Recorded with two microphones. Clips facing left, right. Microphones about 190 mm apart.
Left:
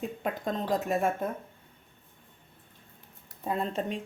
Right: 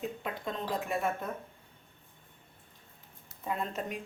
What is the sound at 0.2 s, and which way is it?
Speech, 45° left (ahead or behind).